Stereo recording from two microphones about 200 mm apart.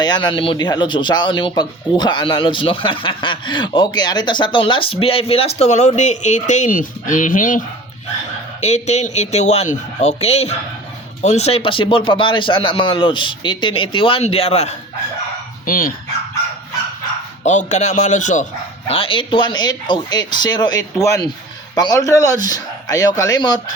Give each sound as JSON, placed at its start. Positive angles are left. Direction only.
{"t": 0.0, "sound": "speech", "side_deg": 20}
{"t": 8.6, "sound": "speech", "side_deg": 35}
{"t": 15.6, "sound": "speech", "side_deg": 45}
{"t": 17.4, "sound": "speech", "side_deg": 35}
{"t": 18.9, "sound": "speech", "side_deg": 25}